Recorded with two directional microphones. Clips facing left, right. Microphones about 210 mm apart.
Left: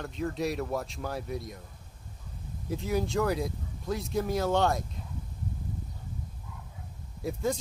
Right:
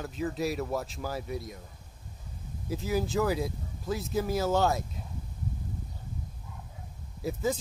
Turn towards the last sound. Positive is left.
turn(degrees=0)  # may be behind; listen again after turning